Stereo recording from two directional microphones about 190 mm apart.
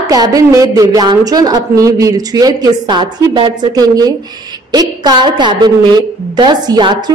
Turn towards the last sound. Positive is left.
turn(degrees=-25)  # may be behind; listen again after turning